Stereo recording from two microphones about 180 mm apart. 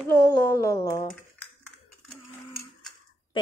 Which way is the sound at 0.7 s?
20° left (ahead or behind).